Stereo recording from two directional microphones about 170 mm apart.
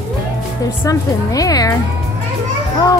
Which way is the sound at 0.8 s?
20° left (ahead or behind).